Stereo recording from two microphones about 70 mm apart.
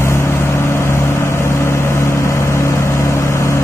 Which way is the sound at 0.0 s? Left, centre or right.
Left.